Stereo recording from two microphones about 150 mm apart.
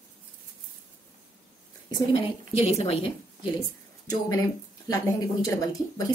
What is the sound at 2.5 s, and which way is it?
Speech, 45° left (ahead or behind).